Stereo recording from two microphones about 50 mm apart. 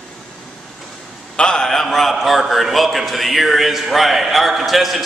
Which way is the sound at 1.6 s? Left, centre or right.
Centre.